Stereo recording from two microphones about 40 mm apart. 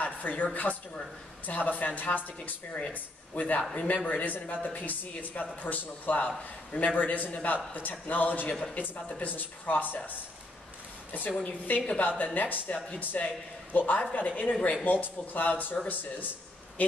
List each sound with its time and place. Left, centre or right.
0.0 s a sound: left
1.4 s a man's voice: left
11.3 s a man's voice: left